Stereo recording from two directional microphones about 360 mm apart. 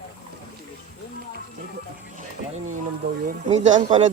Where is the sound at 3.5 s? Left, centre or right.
Centre.